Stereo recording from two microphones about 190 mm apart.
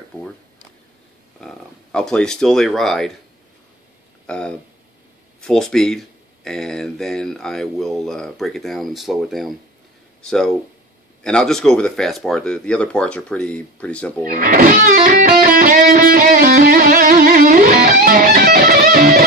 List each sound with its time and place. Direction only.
1.4 s speech: 5° left (ahead or behind)
4.3 s speech: 5° left (ahead or behind)
14.2 s music: 45° right (ahead or behind)